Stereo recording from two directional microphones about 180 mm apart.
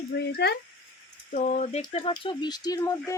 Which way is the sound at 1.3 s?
40° left (ahead or behind).